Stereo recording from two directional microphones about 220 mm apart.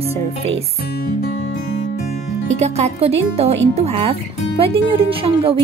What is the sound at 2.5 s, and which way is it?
Speech, 30° right (ahead or behind).